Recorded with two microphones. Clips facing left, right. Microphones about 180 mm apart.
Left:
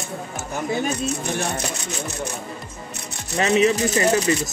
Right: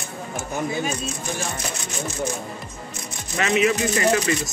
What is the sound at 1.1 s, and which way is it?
Speech, 65° left (ahead or behind).